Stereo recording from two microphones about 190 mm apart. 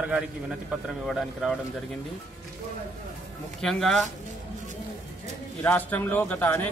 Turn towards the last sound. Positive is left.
turn(degrees=10)  # may be behind; listen again after turning